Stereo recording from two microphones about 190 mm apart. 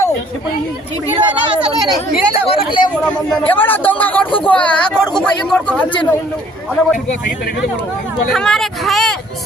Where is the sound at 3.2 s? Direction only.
10° left (ahead or behind).